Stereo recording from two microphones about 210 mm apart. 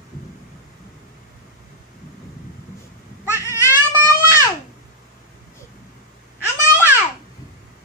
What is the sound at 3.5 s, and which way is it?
Baby laughter, 15° left (ahead or behind).